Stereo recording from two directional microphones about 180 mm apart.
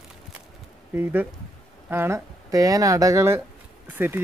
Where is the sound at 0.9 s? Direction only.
10° right (ahead or behind).